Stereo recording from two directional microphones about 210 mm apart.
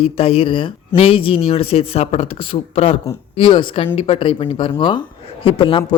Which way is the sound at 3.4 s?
25° left (ahead or behind).